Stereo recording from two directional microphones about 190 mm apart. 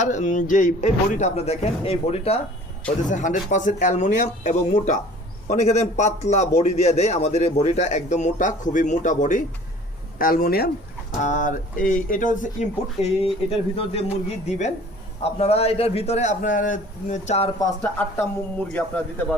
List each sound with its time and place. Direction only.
0.0 s a man's voice: 40° left (ahead or behind)
11.2 s a man's voice: 40° left (ahead or behind)
18.7 s speech: 10° left (ahead or behind)